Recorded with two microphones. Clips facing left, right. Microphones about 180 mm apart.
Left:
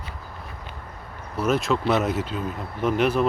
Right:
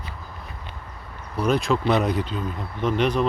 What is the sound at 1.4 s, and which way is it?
Speech, 5° left (ahead or behind).